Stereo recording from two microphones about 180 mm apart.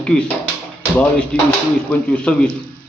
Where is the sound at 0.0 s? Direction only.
5° left (ahead or behind).